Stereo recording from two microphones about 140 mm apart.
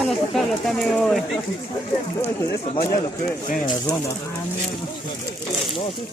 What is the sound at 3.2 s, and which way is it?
Speech, 65° left (ahead or behind).